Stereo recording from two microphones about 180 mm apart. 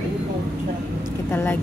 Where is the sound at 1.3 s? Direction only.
10° left (ahead or behind).